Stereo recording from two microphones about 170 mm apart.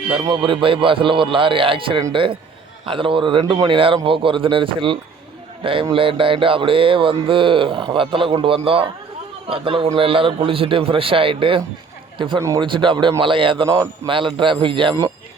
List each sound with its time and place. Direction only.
0.3 s a man's voice: 30° right (ahead or behind)
12.4 s a man's voice: 20° right (ahead or behind)
12.6 s speech: 30° right (ahead or behind)
13.7 s a man's voice: 15° right (ahead or behind)
14.1 s speech: 30° right (ahead or behind)